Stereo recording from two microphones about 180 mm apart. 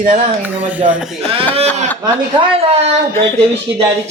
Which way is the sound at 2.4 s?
35° right (ahead or behind).